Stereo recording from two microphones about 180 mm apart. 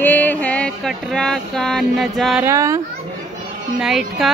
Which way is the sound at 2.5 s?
15° right (ahead or behind).